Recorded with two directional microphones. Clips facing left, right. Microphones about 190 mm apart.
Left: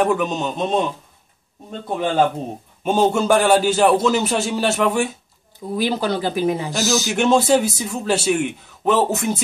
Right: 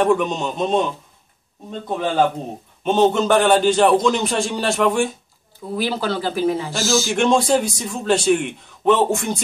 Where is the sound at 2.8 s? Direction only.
10° left (ahead or behind).